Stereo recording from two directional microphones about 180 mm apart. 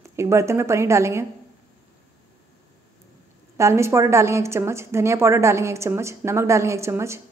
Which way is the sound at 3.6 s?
15° right (ahead or behind).